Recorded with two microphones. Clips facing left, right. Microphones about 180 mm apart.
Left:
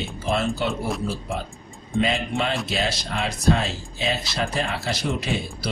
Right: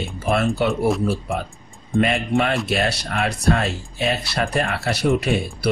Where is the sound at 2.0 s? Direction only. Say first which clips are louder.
Right 4 dB; 65° right (ahead or behind).